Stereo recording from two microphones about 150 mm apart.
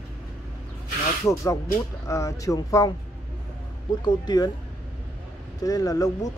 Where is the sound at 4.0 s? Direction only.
30° left (ahead or behind).